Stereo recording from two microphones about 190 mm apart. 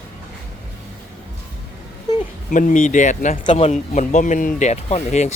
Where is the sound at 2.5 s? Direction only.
40° left (ahead or behind).